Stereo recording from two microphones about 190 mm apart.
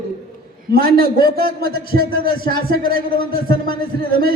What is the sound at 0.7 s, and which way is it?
A man's voice, 50° right (ahead or behind).